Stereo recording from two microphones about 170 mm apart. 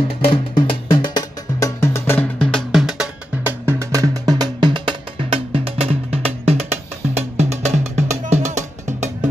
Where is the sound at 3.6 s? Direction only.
20° right (ahead or behind); by 9.3 s 45° right (ahead or behind).